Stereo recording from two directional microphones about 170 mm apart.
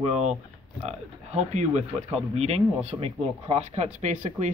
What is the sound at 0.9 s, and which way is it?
Speech, 40° right (ahead or behind).